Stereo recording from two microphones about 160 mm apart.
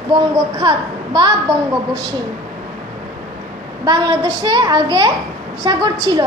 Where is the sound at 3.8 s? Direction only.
25° right (ahead or behind).